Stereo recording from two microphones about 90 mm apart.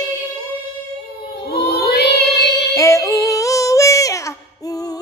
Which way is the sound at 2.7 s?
35° left (ahead or behind).